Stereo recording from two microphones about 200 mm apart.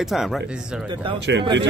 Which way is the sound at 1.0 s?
25° right (ahead or behind).